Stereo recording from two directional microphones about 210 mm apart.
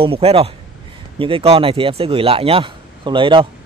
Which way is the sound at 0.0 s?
25° right (ahead or behind).